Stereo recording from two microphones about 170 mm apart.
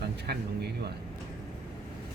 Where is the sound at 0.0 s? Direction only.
70° right (ahead or behind).